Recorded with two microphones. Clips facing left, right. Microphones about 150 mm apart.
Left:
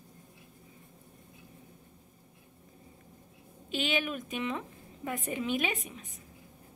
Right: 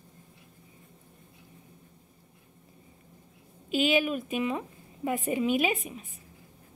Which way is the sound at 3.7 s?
10° right (ahead or behind).